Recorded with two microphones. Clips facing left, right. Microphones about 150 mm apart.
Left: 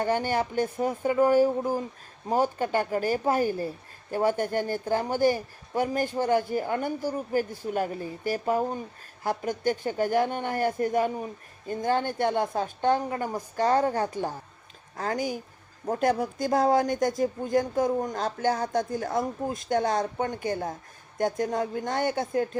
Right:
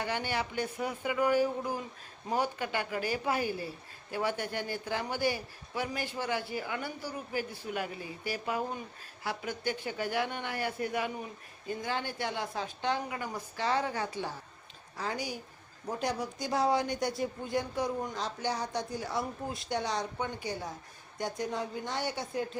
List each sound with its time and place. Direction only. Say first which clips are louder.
0.0 s speech: left 8 dB; 45° left (ahead or behind)